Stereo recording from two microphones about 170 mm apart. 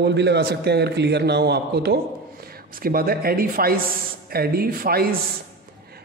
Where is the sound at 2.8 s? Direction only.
60° right (ahead or behind).